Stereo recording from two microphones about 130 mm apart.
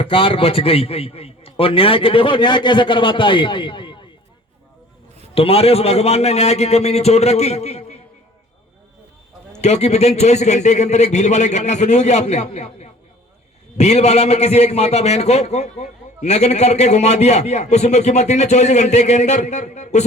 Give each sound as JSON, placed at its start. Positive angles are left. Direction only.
{"t": 0.0, "sound": "a man's voice", "side_deg": 40}
{"t": 5.3, "sound": "a man's voice", "side_deg": 50}
{"t": 9.6, "sound": "a man's voice", "side_deg": 60}